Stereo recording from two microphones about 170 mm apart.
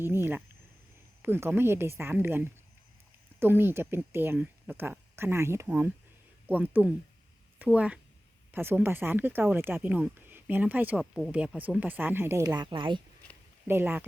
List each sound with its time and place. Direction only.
0.0 s speech: 15° right (ahead or behind); by 13.0 s 30° right (ahead or behind)
13.7 s speech: 10° right (ahead or behind)